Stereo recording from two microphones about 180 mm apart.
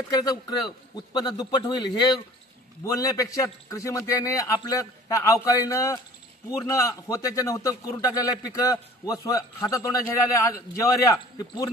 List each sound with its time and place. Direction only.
0.1 s a man's voice: 20° left (ahead or behind)